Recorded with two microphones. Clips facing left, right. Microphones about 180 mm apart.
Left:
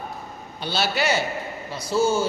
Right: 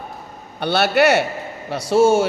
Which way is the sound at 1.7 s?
80° right.